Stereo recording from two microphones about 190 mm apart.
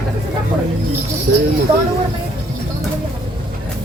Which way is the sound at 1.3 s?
60° right (ahead or behind).